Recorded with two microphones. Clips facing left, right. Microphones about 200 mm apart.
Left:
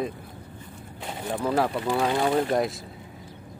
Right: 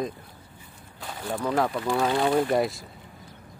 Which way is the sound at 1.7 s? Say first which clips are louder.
Even; 15° left (ahead or behind).